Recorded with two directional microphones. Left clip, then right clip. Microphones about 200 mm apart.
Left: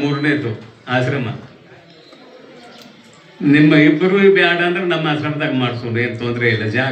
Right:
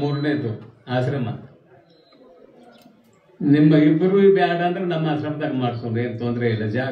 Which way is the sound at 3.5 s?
20° right (ahead or behind).